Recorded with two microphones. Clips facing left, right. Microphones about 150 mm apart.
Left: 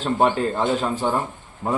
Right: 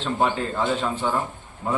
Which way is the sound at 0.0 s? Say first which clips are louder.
Left 4 dB; 40° left (ahead or behind).